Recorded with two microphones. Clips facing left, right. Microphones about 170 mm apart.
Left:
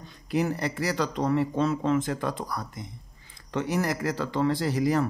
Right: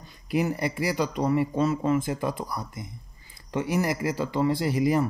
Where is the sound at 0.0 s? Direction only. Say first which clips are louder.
Right 1 dB; 10° right (ahead or behind).